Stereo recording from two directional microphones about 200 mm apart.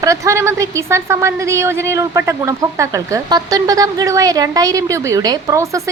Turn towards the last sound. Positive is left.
turn(degrees=-15)  # may be behind; listen again after turning